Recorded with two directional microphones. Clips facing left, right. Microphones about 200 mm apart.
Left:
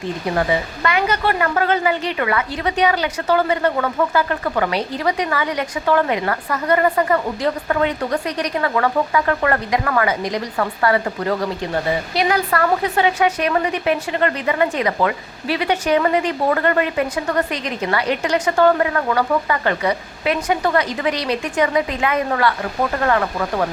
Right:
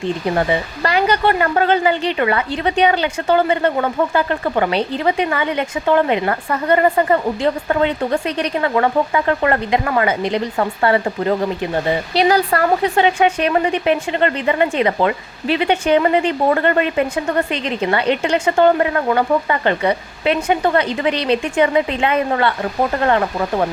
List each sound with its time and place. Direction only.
0.3 s speech: 35° right (ahead or behind)
12.1 s speech: 30° right (ahead or behind)